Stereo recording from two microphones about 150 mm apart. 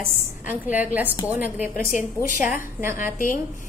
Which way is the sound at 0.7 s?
10° right (ahead or behind).